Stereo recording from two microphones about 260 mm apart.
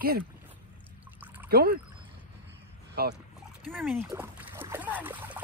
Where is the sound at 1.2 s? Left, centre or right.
Centre.